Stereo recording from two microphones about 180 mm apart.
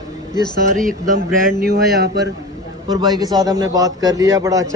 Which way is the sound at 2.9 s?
20° right (ahead or behind).